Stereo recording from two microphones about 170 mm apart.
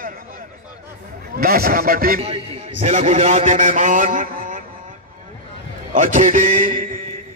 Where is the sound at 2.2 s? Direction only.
35° right (ahead or behind).